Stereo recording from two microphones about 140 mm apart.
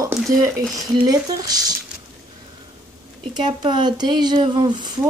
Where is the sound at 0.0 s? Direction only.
20° right (ahead or behind).